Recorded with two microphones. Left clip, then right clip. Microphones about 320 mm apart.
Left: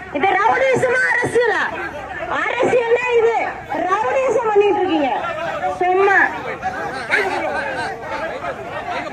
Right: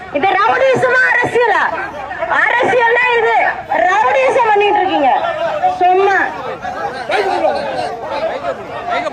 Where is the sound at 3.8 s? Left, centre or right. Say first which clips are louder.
Right 5 dB; centre.